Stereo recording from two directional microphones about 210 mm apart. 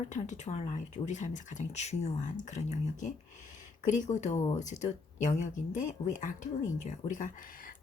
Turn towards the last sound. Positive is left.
turn(degrees=40)  # may be behind; listen again after turning